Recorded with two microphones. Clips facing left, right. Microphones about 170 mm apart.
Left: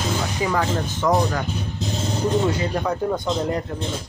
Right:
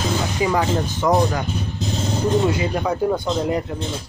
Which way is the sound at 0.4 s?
10° right (ahead or behind).